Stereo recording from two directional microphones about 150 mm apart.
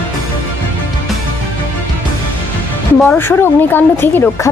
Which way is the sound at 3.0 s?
15° left (ahead or behind).